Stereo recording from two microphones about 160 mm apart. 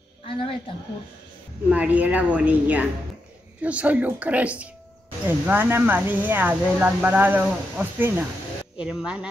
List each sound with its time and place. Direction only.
0.3 s a woman's voice: 35° left (ahead or behind)
1.7 s speech: 10° right (ahead or behind)